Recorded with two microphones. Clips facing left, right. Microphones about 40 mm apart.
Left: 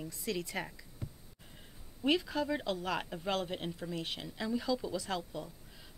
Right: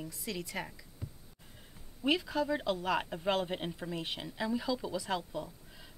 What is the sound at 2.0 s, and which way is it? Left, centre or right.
Speech, centre.